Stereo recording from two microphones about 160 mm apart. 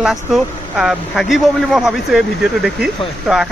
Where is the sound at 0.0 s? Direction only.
Centre (ahead or behind).